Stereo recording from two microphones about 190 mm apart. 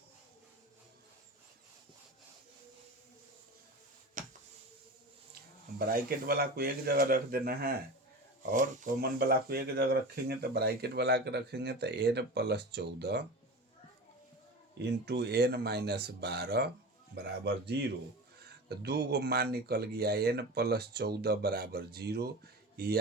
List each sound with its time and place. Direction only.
4.2 s a sound: 45° right (ahead or behind)
5.9 s speech: 50° right (ahead or behind)
15.0 s speech: 60° right (ahead or behind)
17.7 s speech: 65° right (ahead or behind)